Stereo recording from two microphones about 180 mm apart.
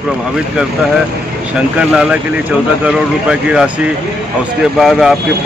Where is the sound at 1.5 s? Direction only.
5° right (ahead or behind).